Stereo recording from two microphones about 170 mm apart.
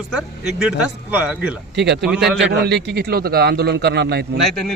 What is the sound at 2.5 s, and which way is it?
A man's voice, 75° right (ahead or behind).